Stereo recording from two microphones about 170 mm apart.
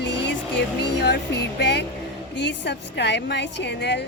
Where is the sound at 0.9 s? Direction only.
85° left.